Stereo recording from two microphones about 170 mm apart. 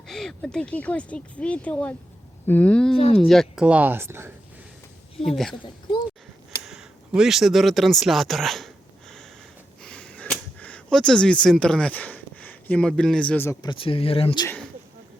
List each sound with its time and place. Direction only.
0.1 s speech: centre (ahead or behind); by 4.3 s 15° right (ahead or behind)
6.7 s a sound: 5° right (ahead or behind); by 13.6 s 10° left (ahead or behind)
13.6 s speech: 30° left (ahead or behind)
14.4 s speech: 10° left (ahead or behind)